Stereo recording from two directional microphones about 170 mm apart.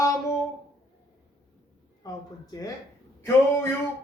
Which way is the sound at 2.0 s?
20° left (ahead or behind).